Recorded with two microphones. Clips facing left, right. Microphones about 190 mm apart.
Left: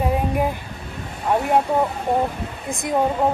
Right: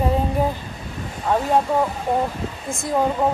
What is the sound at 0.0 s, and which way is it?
Child singing, 10° left (ahead or behind).